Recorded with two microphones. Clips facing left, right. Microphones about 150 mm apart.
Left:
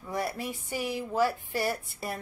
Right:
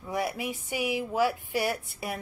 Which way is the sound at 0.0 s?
5° right (ahead or behind).